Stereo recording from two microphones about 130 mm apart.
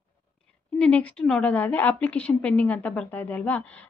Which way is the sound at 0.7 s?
10° left (ahead or behind).